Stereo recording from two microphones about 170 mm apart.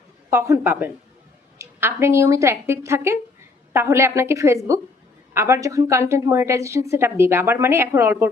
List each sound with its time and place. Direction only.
0.3 s a woman's voice: 15° right (ahead or behind)